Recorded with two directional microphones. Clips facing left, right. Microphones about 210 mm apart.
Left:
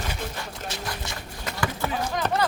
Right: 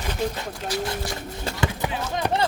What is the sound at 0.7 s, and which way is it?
Speech, 25° left (ahead or behind).